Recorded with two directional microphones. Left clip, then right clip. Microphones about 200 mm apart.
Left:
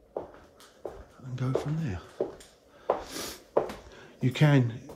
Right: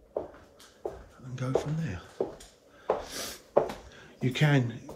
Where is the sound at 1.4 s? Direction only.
20° left (ahead or behind).